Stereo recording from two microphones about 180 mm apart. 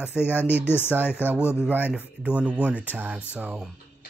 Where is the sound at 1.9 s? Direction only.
5° right (ahead or behind).